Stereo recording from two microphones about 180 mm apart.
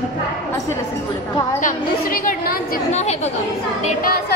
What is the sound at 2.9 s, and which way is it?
Speech, 40° left (ahead or behind).